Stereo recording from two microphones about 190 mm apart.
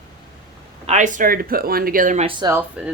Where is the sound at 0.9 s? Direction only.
40° right (ahead or behind).